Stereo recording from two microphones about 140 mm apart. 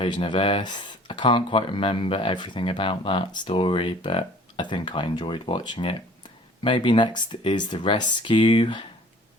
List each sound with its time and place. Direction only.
0.0 s speech: 35° left (ahead or behind)